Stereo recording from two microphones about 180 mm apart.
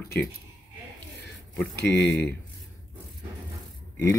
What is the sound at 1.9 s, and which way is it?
Speech, 65° left (ahead or behind).